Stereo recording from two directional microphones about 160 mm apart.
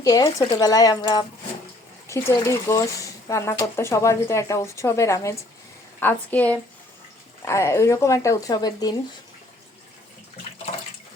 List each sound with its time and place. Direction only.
0.0 s speech: 20° left (ahead or behind)